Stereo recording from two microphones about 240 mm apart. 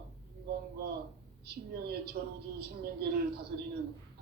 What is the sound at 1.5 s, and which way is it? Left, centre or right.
A woman's voice, right.